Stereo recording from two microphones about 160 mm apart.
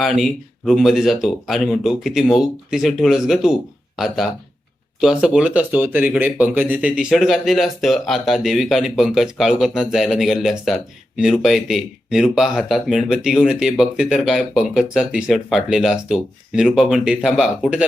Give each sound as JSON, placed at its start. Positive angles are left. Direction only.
{"t": 0.0, "sound": "speech", "side_deg": 0}